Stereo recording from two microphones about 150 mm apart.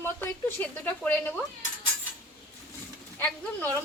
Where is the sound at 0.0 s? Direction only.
15° left (ahead or behind).